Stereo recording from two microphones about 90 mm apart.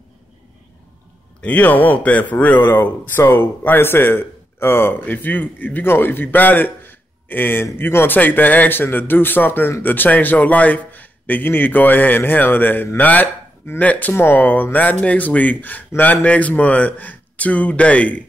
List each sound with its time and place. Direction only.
1.4 s speech: 15° left (ahead or behind)